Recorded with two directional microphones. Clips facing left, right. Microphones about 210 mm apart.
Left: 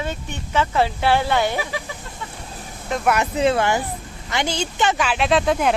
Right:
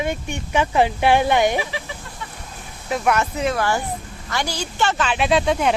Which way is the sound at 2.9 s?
Centre (ahead or behind).